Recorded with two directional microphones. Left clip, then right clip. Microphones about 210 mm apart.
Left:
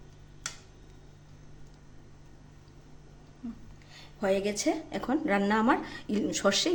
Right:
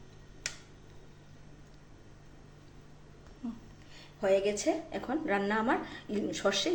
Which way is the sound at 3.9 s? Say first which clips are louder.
Right 1 dB; 45° left (ahead or behind).